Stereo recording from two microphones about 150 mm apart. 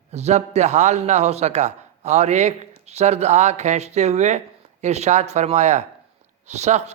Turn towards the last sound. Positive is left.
turn(degrees=-45)  # may be behind; listen again after turning